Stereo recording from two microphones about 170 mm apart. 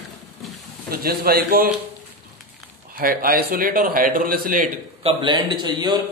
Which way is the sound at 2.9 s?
55° right (ahead or behind).